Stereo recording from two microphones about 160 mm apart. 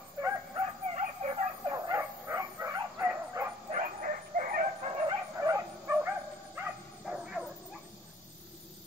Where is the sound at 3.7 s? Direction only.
55° right (ahead or behind).